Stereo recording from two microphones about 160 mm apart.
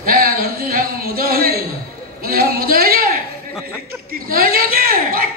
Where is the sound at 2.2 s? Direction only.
70° right (ahead or behind).